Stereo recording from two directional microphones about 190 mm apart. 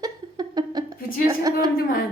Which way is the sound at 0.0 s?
20° right (ahead or behind).